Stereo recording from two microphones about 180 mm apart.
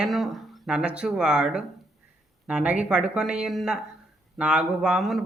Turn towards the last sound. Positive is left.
turn(degrees=0)  # may be behind; listen again after turning